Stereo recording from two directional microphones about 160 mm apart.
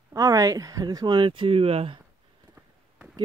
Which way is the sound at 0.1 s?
20° right (ahead or behind).